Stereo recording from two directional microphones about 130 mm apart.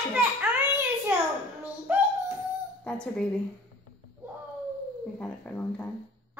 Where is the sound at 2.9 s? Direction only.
5° left (ahead or behind).